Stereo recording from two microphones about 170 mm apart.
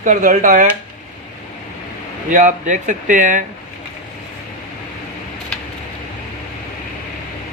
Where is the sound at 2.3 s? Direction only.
45° right (ahead or behind).